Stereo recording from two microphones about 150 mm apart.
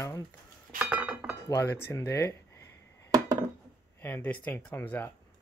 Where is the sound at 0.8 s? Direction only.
5° right (ahead or behind).